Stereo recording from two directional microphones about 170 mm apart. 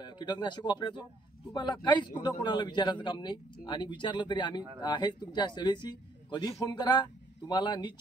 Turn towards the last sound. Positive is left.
turn(degrees=25)  # may be behind; listen again after turning